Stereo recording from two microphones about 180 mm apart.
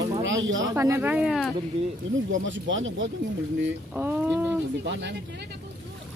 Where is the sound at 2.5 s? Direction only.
90° right.